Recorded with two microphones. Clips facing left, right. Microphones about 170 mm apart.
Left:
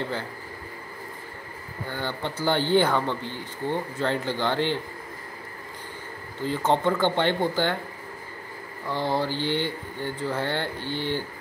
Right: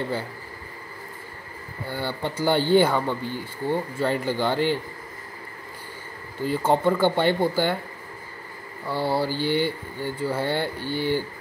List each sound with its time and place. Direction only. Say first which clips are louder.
1.9 s speech: right 2 dB; 10° right (ahead or behind)
6.4 s speech: right 2 dB; 10° right (ahead or behind)
8.8 s speech: right 2 dB; 10° right (ahead or behind)